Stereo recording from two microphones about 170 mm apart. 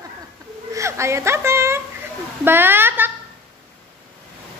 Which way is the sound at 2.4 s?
10° right (ahead or behind).